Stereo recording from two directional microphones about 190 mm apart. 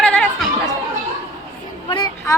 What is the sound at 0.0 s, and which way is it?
Chatter, 5° left (ahead or behind).